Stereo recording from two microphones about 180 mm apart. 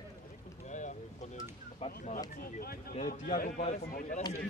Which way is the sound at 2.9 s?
45° left (ahead or behind).